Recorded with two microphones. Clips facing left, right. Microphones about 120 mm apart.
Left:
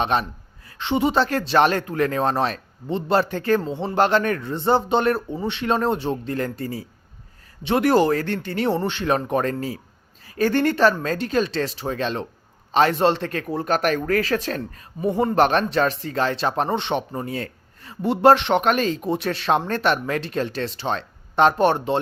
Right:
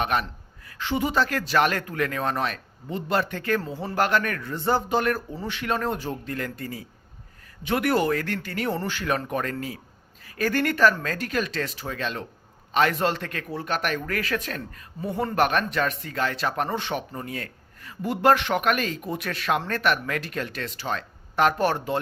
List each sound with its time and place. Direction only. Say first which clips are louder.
0.0 s speech: left 3 dB; 30° left (ahead or behind)
15.0 s speech: left 5 dB; 20° left (ahead or behind)